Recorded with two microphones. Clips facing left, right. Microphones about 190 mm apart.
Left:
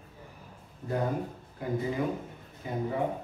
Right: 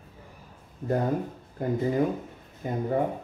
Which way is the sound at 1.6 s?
45° right (ahead or behind).